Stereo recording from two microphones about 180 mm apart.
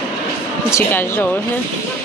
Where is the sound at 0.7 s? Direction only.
10° left (ahead or behind).